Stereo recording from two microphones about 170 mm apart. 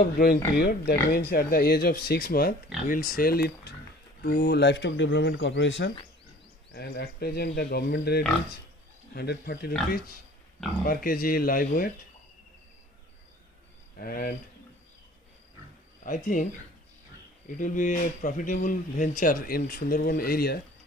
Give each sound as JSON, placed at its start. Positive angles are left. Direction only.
{"t": 0.0, "sound": "speech", "side_deg": 60}
{"t": 6.7, "sound": "speech", "side_deg": 70}
{"t": 13.9, "sound": "speech", "side_deg": 60}
{"t": 16.0, "sound": "speech", "side_deg": 50}
{"t": 17.6, "sound": "a man's voice", "side_deg": 50}